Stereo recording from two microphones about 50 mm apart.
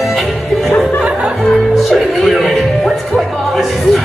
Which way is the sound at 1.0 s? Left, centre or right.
Right.